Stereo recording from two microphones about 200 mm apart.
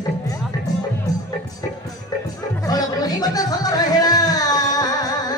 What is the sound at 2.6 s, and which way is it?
Music, 20° left (ahead or behind).